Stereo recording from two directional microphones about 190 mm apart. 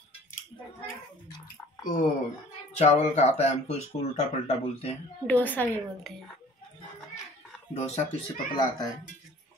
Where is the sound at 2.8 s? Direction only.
35° left (ahead or behind).